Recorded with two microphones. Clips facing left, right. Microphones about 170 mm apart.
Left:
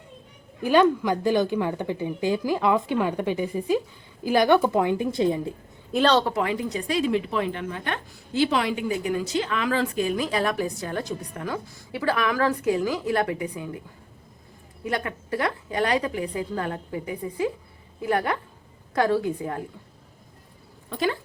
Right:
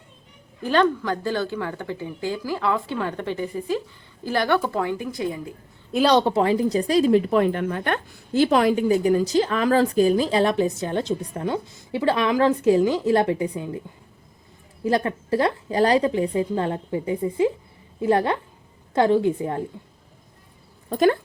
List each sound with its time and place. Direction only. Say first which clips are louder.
0.6 s a woman's voice: left 1 dB; 10° left (ahead or behind)
5.9 s a woman's voice: right 2 dB; 5° right (ahead or behind)
6.1 s speech: right 5 dB; 25° right (ahead or behind)
14.8 s a woman's voice: right 6 dB; 30° right (ahead or behind)
20.9 s speech: right 8 dB; 50° right (ahead or behind)